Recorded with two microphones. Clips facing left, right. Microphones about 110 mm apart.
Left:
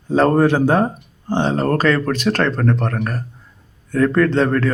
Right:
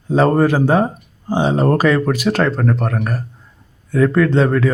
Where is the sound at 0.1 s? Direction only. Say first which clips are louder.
Even; centre (ahead or behind).